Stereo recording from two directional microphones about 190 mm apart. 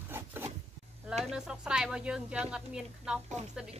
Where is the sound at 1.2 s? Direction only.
5° right (ahead or behind).